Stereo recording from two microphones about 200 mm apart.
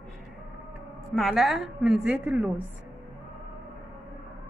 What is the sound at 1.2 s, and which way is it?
A woman's voice, centre (ahead or behind).